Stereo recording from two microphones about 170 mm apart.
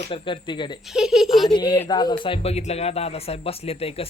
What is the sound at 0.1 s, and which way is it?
Speech, 30° left (ahead or behind).